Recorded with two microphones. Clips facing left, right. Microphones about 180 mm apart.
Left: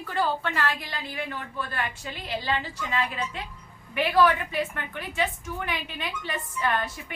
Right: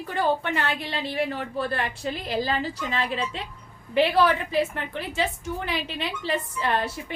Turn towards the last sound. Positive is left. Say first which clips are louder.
# right 2 dB
turn(degrees=-30)  # may be behind; listen again after turning